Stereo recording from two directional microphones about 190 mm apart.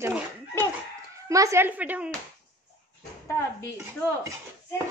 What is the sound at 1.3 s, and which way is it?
Speech, 15° right (ahead or behind).